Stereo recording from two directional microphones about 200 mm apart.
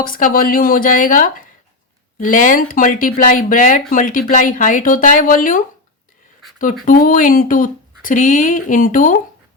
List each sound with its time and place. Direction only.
0.0 s speech: 45° left (ahead or behind)
6.8 s speech: 40° left (ahead or behind)